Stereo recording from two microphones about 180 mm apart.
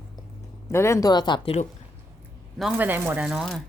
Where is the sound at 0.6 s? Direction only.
15° left (ahead or behind); by 1.7 s 35° left (ahead or behind).